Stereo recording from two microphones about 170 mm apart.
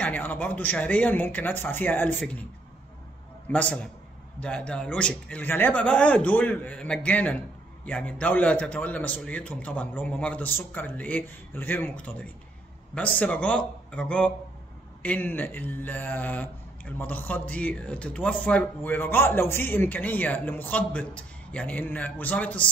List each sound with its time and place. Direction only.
0.0 s a man's voice: 10° left (ahead or behind)
3.4 s a man's voice: 10° left (ahead or behind)